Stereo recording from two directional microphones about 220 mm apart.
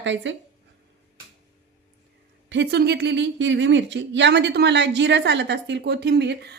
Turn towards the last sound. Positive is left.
turn(degrees=-50)  # may be behind; listen again after turning